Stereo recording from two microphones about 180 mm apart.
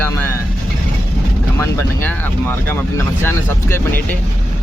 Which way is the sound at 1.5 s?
15° left (ahead or behind).